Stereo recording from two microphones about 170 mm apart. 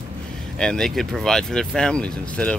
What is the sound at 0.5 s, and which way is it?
Speech, 5° left (ahead or behind).